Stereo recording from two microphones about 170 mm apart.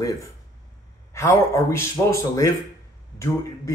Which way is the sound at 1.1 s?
15° left (ahead or behind).